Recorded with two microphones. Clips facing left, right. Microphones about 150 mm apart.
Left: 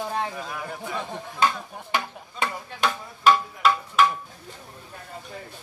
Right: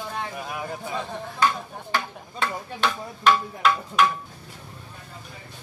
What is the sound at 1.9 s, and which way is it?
Speech, 10° left (ahead or behind).